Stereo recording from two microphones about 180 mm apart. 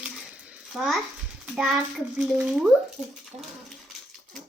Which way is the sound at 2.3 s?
5° right (ahead or behind).